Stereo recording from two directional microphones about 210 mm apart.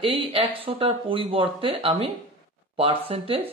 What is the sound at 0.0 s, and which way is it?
Speech, 25° right (ahead or behind).